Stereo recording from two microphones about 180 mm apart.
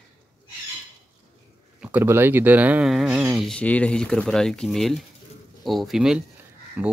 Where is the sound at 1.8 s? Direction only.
10° right (ahead or behind).